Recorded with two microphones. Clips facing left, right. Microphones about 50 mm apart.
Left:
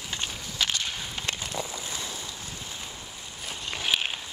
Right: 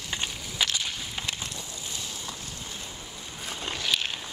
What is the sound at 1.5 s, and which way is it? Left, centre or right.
Vehicle, left.